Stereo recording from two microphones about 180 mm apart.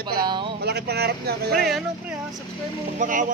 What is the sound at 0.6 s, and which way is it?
Speech, 65° right (ahead or behind).